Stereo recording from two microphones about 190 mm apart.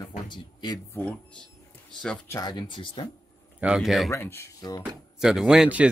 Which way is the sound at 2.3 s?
20° left (ahead or behind).